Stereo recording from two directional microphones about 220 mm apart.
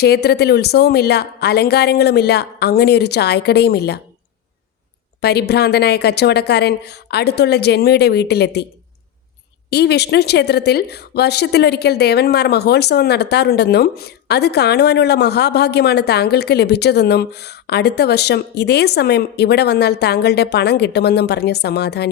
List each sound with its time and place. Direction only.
0.0 s speech: 45° left (ahead or behind)
5.2 s speech: 45° left (ahead or behind)
9.6 s speech: 45° left (ahead or behind)